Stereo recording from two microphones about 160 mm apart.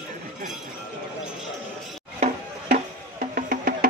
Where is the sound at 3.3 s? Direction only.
65° right (ahead or behind).